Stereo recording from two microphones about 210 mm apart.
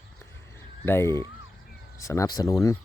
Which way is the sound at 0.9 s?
10° left (ahead or behind).